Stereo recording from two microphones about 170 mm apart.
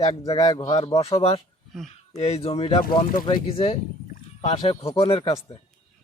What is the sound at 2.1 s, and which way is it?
Speech, 40° left (ahead or behind).